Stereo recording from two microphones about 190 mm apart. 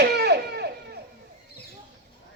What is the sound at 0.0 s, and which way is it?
Baby cry, 60° right (ahead or behind).